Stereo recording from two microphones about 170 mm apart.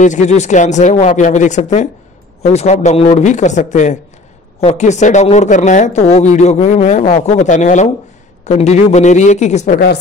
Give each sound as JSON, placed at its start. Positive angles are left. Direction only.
{"t": 0.0, "sound": "speech", "side_deg": 45}